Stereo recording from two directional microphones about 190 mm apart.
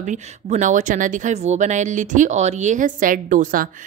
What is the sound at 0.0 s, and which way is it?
Speech, 40° right (ahead or behind).